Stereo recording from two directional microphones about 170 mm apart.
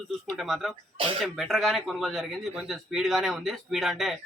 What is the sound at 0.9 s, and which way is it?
Speech, 30° right (ahead or behind).